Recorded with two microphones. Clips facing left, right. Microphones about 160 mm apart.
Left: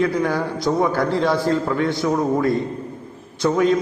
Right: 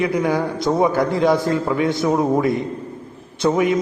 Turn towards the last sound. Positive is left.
turn(degrees=-15)  # may be behind; listen again after turning